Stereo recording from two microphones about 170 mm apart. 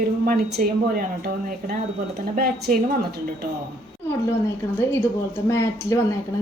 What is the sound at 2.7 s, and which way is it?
Speech, 55° right (ahead or behind).